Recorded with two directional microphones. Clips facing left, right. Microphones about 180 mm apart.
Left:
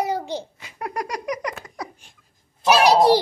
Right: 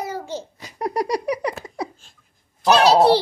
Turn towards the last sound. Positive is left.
turn(degrees=15)  # may be behind; listen again after turning